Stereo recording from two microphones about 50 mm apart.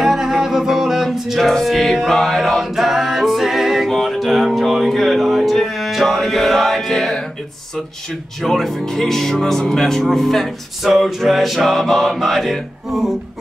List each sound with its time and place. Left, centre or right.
0.0 s music: centre
8.4 s speech: centre
10.9 s mantra: centre
12.9 s music: centre